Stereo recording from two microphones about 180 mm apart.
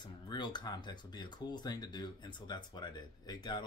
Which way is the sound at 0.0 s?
25° left (ahead or behind).